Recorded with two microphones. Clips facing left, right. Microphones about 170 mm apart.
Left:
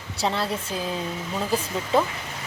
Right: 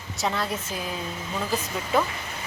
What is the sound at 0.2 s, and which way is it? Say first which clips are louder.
Speech: left 2 dB; 30° left (ahead or behind).